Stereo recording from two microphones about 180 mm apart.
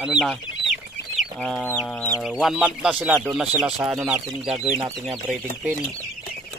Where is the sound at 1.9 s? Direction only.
5° left (ahead or behind).